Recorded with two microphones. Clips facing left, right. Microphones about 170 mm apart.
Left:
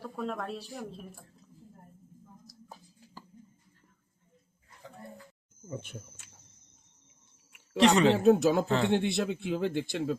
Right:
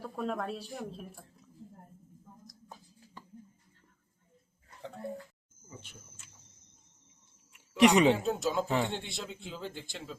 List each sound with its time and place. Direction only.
0.0 s a woman's voice: centre (ahead or behind)
5.6 s speech: 55° left (ahead or behind)
7.8 s speech: 15° right (ahead or behind)
8.2 s speech: 65° left (ahead or behind)
8.6 s speech: 15° right (ahead or behind)
8.9 s speech: 65° left (ahead or behind)